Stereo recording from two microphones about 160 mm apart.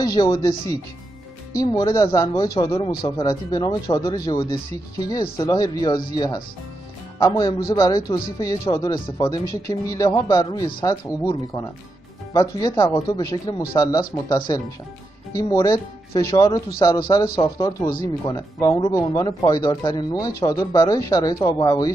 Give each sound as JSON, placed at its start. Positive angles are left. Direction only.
{"t": 0.0, "sound": "speech", "side_deg": 25}